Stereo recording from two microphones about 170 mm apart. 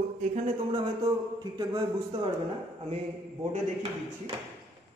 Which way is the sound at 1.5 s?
25° right (ahead or behind).